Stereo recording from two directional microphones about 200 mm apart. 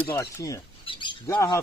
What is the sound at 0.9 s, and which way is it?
Bird, 25° left (ahead or behind).